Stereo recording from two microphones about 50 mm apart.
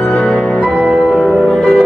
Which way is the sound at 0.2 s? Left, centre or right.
Centre.